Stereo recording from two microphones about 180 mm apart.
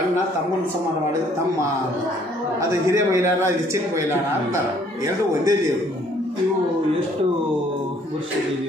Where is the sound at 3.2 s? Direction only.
15° right (ahead or behind).